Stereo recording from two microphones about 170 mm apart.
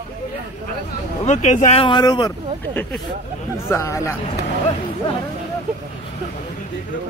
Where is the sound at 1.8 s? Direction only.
25° left (ahead or behind).